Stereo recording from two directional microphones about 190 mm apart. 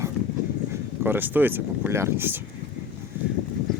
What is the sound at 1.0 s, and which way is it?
Speech, 10° right (ahead or behind).